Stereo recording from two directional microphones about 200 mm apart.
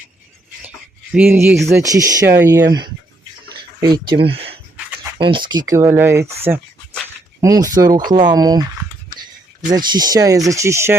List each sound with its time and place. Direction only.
1.1 s speech: 10° right (ahead or behind)
3.5 s a sound: 20° right (ahead or behind)
4.2 s speech: 25° right (ahead or behind)
7.4 s speech: 20° right (ahead or behind)
9.6 s speech: 20° right (ahead or behind)